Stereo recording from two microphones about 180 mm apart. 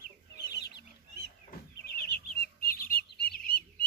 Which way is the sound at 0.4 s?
70° left (ahead or behind).